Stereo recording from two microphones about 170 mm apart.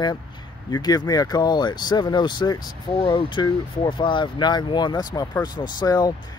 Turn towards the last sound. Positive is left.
turn(degrees=25)  # may be behind; listen again after turning